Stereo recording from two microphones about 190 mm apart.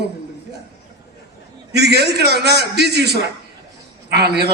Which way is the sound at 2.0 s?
60° right (ahead or behind).